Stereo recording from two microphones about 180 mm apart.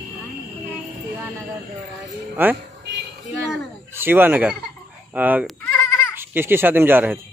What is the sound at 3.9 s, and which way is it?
A man's voice, 10° right (ahead or behind).